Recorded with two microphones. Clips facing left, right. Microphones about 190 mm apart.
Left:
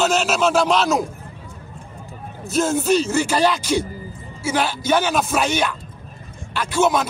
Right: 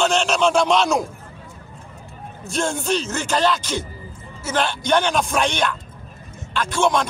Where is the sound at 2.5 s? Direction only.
5° left (ahead or behind).